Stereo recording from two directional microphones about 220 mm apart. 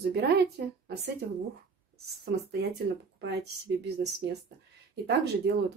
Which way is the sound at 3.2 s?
50° right (ahead or behind).